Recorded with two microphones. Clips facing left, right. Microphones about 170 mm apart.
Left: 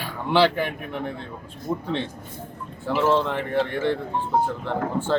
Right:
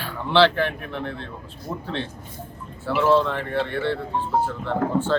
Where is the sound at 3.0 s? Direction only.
15° left (ahead or behind).